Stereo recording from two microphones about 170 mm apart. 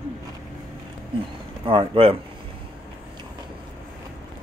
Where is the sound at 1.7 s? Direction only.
30° right (ahead or behind).